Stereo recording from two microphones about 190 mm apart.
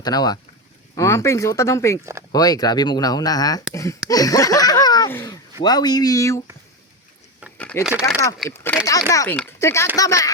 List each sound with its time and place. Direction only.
0.0 s speech: 20° left (ahead or behind)
7.6 s a sound: 5° left (ahead or behind)
7.9 s speech: 5° right (ahead or behind)
8.4 s speech: 10° left (ahead or behind)